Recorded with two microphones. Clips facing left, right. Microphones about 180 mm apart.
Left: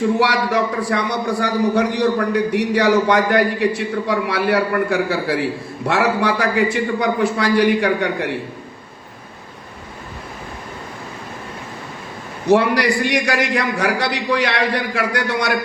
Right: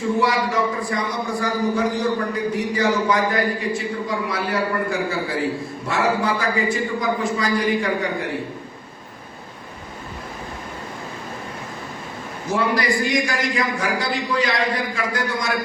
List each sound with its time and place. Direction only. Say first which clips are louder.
0.2 s a man's voice: left 2 dB; 70° left (ahead or behind)
12.5 s a man's voice: left 6 dB; 70° left (ahead or behind)